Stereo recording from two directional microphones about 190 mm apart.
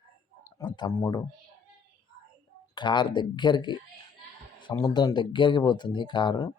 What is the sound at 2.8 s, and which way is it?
Speech, 25° left (ahead or behind).